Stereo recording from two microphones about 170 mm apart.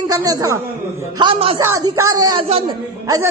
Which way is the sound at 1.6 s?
15° right (ahead or behind).